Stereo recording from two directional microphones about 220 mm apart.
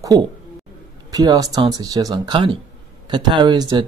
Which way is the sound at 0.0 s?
20° right (ahead or behind).